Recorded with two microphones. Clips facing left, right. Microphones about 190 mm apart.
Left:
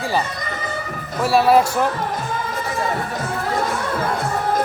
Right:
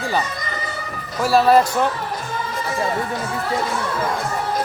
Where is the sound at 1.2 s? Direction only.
Centre (ahead or behind).